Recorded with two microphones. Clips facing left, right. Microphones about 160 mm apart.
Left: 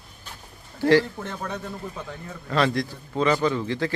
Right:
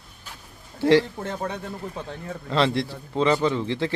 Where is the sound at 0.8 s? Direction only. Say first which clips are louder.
Right 1 dB; 25° right (ahead or behind).